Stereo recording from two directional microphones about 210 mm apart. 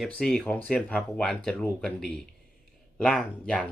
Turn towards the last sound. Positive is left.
turn(degrees=5)  # may be behind; listen again after turning